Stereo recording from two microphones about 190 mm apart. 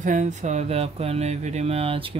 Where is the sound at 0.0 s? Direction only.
40° right (ahead or behind).